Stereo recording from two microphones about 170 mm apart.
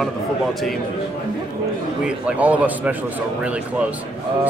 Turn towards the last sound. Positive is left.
turn(degrees=-5)  # may be behind; listen again after turning